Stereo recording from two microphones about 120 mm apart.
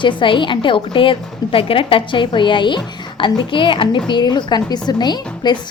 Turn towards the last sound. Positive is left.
turn(degrees=35)  # may be behind; listen again after turning